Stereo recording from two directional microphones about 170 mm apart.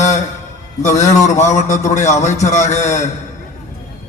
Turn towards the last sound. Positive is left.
turn(degrees=45)  # may be behind; listen again after turning